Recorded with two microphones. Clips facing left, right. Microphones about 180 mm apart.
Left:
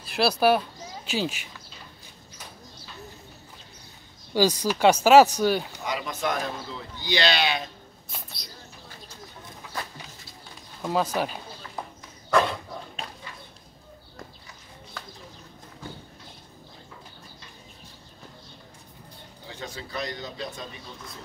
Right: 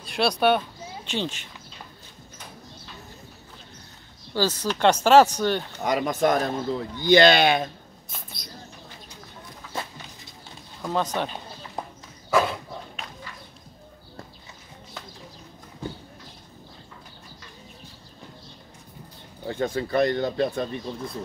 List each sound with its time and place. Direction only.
0.0 s speech: 5° left (ahead or behind)
4.3 s speech: 15° left (ahead or behind)
5.9 s speech: 50° right (ahead or behind)
10.8 s speech: 5° left (ahead or behind)
12.3 s dog: 5° right (ahead or behind)
19.4 s speech: 55° right (ahead or behind)